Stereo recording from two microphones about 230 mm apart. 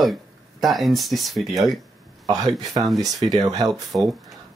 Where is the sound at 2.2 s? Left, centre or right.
Centre.